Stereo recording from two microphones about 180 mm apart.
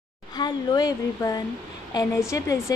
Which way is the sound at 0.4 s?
20° left (ahead or behind).